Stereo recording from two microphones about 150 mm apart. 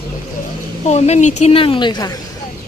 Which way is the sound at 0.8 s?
50° left (ahead or behind).